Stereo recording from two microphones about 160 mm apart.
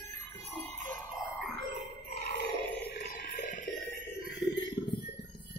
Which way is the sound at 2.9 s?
65° left (ahead or behind).